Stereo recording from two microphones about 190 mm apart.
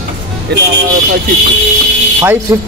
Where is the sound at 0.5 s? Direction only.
60° right (ahead or behind).